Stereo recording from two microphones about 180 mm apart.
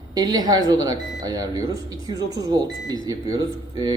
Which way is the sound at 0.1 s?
20° right (ahead or behind).